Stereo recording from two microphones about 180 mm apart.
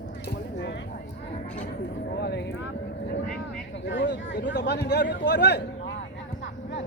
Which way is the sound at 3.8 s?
75° left (ahead or behind).